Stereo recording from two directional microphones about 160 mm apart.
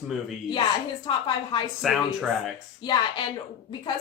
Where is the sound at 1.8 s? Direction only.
5° right (ahead or behind).